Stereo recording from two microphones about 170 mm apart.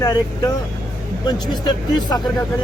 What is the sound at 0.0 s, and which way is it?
Speech, 20° left (ahead or behind).